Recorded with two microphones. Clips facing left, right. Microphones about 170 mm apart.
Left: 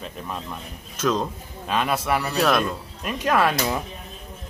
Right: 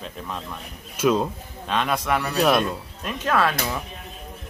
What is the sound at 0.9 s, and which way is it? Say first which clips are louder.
Speech: right 3 dB; 10° right (ahead or behind).